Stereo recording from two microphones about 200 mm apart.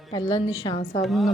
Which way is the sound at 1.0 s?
Centre (ahead or behind).